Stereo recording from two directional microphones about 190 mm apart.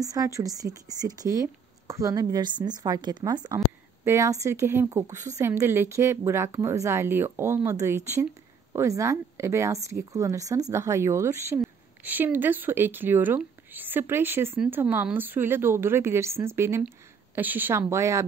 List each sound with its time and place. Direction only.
0.0 s speech: 20° right (ahead or behind)